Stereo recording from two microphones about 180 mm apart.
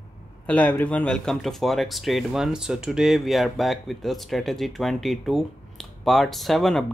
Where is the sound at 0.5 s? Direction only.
10° left (ahead or behind).